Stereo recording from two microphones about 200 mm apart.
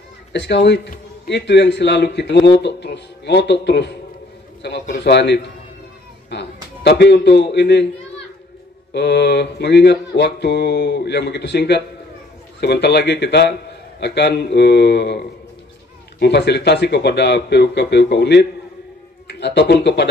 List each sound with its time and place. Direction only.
0.3 s a man's voice: 60° left (ahead or behind)
8.9 s a man's voice: 60° left (ahead or behind)